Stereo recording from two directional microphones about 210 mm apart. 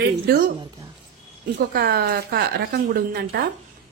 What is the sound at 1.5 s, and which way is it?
A woman's voice, 45° right (ahead or behind).